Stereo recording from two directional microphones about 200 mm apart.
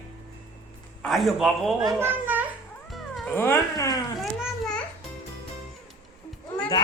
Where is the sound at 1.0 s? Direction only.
Centre (ahead or behind).